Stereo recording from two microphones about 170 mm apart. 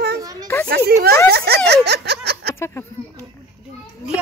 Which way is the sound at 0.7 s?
65° right (ahead or behind).